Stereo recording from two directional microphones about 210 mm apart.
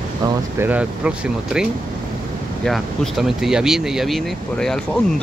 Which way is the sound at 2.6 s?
Centre (ahead or behind).